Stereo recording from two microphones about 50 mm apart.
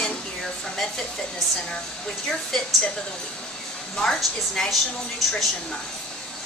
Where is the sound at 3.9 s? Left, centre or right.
Centre.